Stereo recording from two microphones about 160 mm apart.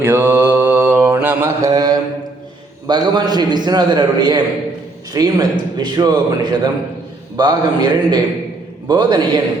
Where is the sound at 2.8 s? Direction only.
25° right (ahead or behind).